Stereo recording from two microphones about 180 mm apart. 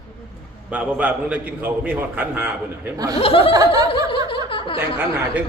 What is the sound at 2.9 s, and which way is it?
Speech, 20° right (ahead or behind).